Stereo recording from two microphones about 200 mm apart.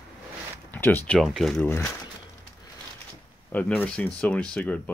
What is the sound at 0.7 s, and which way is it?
Speech, 10° left (ahead or behind).